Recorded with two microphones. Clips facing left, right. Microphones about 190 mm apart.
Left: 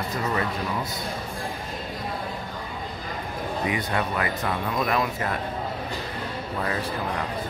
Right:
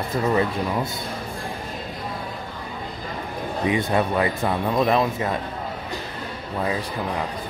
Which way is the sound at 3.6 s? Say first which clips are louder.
Right 7 dB; 25° right (ahead or behind).